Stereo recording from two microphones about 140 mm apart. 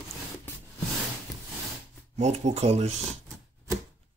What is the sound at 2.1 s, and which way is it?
Speech, 55° right (ahead or behind).